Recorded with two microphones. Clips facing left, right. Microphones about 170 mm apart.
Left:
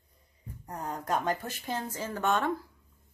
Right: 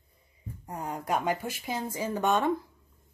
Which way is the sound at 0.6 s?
10° right (ahead or behind).